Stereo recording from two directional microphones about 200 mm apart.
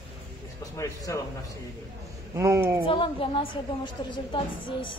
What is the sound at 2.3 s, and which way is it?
Speech, 15° right (ahead or behind).